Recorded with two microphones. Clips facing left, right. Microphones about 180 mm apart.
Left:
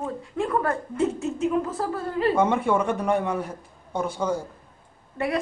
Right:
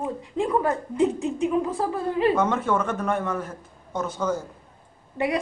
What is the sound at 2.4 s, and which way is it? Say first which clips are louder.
A man's voice: left 2 dB; 10° left (ahead or behind).